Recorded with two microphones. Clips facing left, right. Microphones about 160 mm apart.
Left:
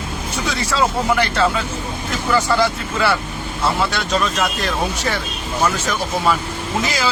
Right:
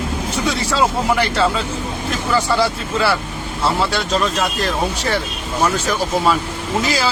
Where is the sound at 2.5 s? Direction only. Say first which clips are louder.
Even; 5° right (ahead or behind).